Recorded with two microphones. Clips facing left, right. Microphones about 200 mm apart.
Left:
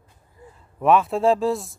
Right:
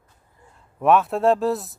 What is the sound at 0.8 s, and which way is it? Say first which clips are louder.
Speech: even; centre (ahead or behind).